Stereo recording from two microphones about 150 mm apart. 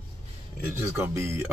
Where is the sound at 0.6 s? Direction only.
15° right (ahead or behind).